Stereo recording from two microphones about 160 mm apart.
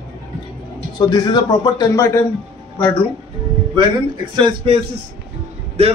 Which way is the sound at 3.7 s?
30° right (ahead or behind).